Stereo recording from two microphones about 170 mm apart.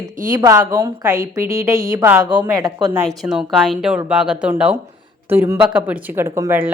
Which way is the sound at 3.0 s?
Centre (ahead or behind).